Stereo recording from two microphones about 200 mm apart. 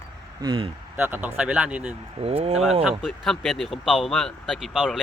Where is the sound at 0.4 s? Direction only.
25° right (ahead or behind).